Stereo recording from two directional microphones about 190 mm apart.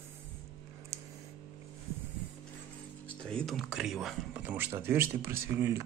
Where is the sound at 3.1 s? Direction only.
5° left (ahead or behind).